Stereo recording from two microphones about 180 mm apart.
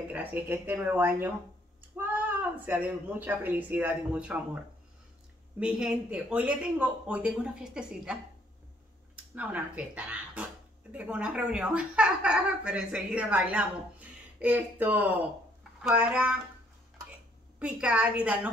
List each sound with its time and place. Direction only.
0.1 s a woman's voice: 10° right (ahead or behind)
5.6 s speech: 5° right (ahead or behind)
17.6 s speech: 5° right (ahead or behind)